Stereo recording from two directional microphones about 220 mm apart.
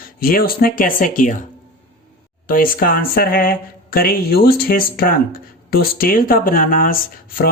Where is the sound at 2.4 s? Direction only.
40° left (ahead or behind).